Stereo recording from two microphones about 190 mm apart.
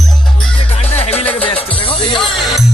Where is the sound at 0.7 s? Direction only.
30° left (ahead or behind).